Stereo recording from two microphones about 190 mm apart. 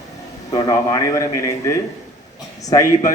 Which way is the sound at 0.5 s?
20° left (ahead or behind).